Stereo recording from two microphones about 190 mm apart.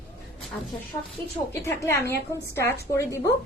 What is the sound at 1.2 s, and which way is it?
A woman's voice, 15° left (ahead or behind).